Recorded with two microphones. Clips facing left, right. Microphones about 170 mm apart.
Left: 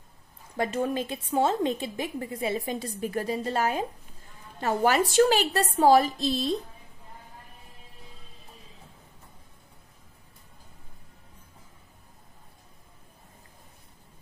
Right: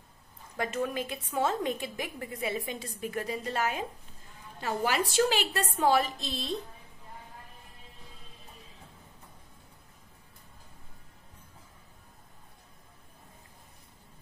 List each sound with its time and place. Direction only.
0.6 s a woman's voice: 30° left (ahead or behind)
4.6 s a woman's voice: 45° left (ahead or behind)